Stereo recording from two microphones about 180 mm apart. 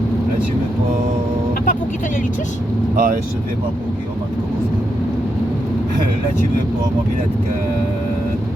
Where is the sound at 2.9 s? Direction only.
50° right (ahead or behind).